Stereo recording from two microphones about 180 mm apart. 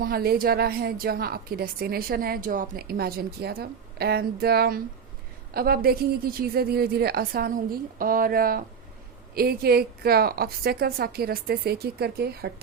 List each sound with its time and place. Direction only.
0.0 s a woman's voice: 55° right (ahead or behind)